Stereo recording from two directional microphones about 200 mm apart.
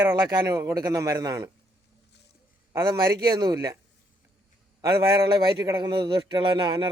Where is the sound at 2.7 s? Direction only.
15° right (ahead or behind).